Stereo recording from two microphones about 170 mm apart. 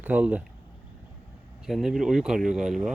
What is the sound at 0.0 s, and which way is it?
Speech, 10° right (ahead or behind).